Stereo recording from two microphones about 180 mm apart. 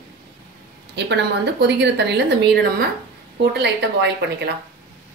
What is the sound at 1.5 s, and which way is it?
A woman's voice, 70° right (ahead or behind).